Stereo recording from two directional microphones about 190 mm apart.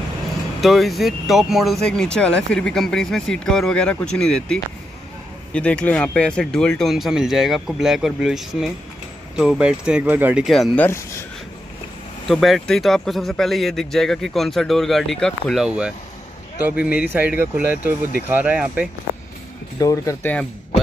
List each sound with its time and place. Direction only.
0.6 s speech: centre (ahead or behind)
12.3 s speech: centre (ahead or behind)
19.8 s speech: 15° left (ahead or behind)